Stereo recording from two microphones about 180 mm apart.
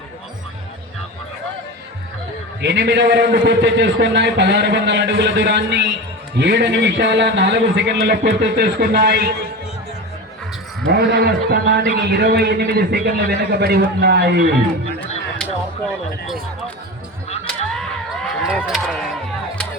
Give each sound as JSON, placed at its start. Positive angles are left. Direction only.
{"t": 2.6, "sound": "a man's voice", "side_deg": -75}
{"t": 10.8, "sound": "a man's voice", "side_deg": -65}
{"t": 16.2, "sound": "speech", "side_deg": 0}
{"t": 17.4, "sound": "a sound", "side_deg": 0}